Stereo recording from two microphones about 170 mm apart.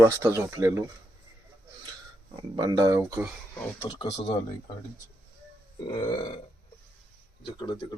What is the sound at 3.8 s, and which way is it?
Speech, 25° left (ahead or behind).